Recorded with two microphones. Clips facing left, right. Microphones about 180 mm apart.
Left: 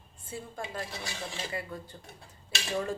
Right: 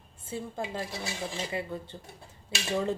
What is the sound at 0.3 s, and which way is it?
Speech, 25° right (ahead or behind).